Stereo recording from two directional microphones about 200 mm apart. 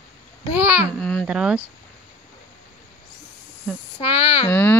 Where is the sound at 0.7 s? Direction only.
5° left (ahead or behind).